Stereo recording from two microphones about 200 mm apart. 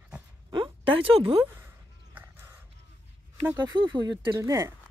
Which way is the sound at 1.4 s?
10° right (ahead or behind).